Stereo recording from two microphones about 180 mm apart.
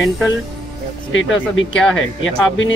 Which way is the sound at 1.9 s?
90° left.